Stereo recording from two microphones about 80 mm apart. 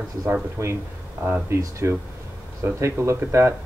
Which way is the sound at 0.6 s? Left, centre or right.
Right.